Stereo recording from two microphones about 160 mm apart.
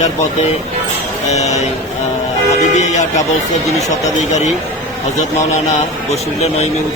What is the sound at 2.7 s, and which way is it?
Speech, 45° left (ahead or behind).